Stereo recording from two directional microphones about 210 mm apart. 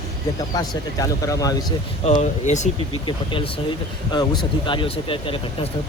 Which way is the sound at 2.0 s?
35° left (ahead or behind).